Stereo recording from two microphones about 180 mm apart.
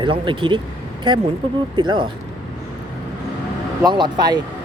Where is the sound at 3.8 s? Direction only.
25° right (ahead or behind).